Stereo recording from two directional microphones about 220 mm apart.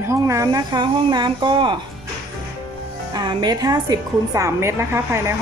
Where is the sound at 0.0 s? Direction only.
15° right (ahead or behind).